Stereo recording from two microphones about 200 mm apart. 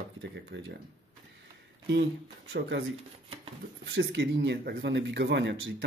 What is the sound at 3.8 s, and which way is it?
Speech, 65° right (ahead or behind).